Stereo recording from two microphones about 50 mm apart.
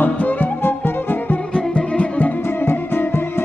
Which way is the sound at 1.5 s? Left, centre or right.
Left.